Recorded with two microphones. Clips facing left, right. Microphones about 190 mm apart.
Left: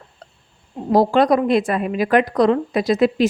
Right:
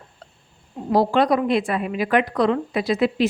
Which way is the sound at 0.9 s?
40° left (ahead or behind).